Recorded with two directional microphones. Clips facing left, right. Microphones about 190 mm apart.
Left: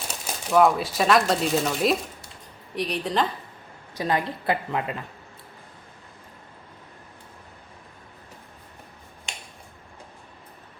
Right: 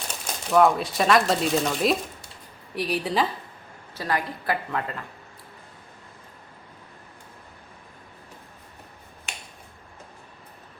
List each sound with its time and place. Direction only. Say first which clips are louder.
0.1 s a woman's voice: even; 5° left (ahead or behind)
3.9 s speech: left 2 dB; 20° left (ahead or behind)